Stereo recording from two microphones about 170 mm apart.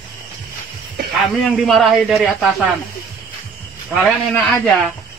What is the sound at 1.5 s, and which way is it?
Speech, centre (ahead or behind).